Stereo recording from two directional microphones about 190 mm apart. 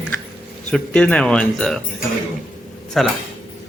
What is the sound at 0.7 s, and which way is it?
A man's voice, 5° left (ahead or behind).